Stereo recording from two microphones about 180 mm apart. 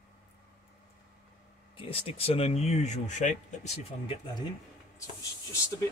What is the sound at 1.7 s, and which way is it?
Speech, 30° left (ahead or behind).